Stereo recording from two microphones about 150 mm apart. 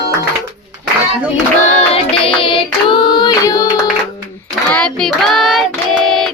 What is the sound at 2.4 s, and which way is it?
Singing, 35° left (ahead or behind).